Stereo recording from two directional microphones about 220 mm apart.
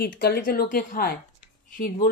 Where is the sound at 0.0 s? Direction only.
45° left (ahead or behind).